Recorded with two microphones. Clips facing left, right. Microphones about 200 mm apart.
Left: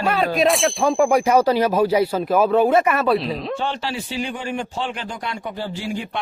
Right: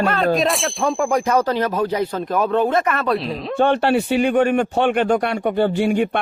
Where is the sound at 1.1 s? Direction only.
10° left (ahead or behind).